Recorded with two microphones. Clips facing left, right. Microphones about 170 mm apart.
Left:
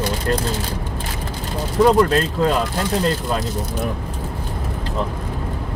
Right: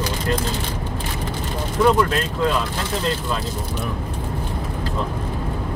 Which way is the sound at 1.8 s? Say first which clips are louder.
Left 3 dB; 40° left (ahead or behind).